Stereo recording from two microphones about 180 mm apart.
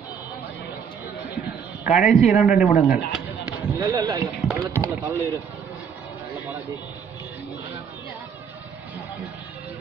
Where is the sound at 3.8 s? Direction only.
20° right (ahead or behind).